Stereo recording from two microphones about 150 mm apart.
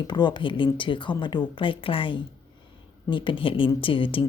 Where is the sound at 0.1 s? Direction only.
30° left (ahead or behind).